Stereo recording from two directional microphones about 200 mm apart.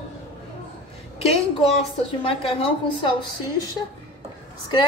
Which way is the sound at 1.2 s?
30° left (ahead or behind).